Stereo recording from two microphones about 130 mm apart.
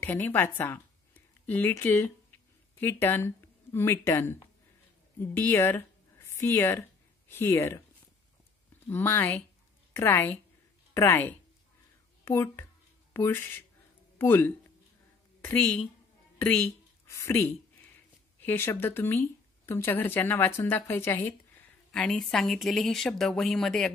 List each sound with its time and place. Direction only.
0.0 s speech: 15° left (ahead or behind)
8.8 s speech: 15° left (ahead or behind)
17.0 s a woman's voice: 20° left (ahead or behind); by 23.9 s 5° left (ahead or behind)